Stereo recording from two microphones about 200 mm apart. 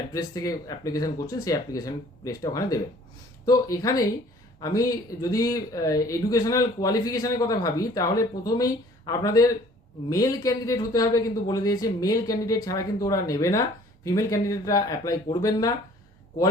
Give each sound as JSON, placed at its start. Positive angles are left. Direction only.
{"t": 0.1, "sound": "speech", "side_deg": 15}